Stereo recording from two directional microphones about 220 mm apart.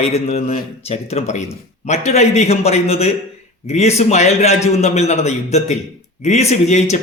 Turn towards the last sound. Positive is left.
turn(degrees=30)  # may be behind; listen again after turning